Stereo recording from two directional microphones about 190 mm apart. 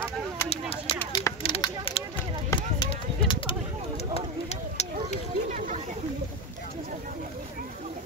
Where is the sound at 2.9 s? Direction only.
25° left (ahead or behind).